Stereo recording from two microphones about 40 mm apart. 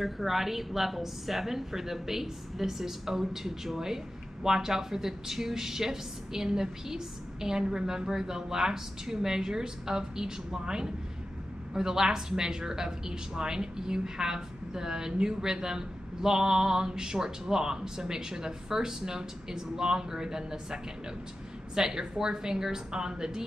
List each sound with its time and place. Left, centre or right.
0.0 s a woman's voice: centre